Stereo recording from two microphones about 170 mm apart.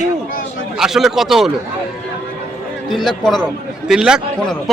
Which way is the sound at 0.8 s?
Centre (ahead or behind).